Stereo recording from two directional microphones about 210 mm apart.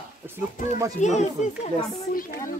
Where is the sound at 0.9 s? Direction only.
35° left (ahead or behind).